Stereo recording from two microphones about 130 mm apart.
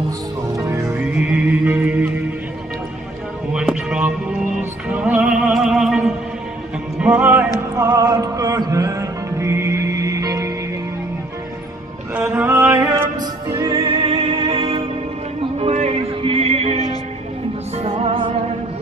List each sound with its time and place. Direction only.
0.8 s music: 10° right (ahead or behind)
3.5 s music: 5° right (ahead or behind)
7.7 s music: 25° right (ahead or behind)
12.3 s a sound: 15° right (ahead or behind)
13.5 s music: 25° right (ahead or behind)
13.8 s music: 45° right (ahead or behind)
17.8 s music: 50° right (ahead or behind)